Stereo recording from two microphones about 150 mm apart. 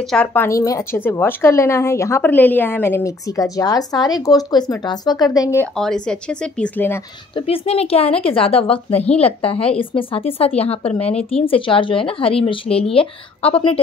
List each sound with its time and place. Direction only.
0.1 s a woman's voice: 10° left (ahead or behind)
5.8 s speech: 5° left (ahead or behind)
7.3 s speech: 40° left (ahead or behind)